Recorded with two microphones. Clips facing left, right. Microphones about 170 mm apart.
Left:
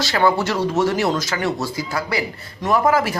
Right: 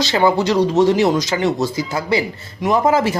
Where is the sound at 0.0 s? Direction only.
20° right (ahead or behind).